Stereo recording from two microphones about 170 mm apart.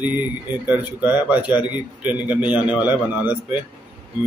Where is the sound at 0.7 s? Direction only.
10° right (ahead or behind).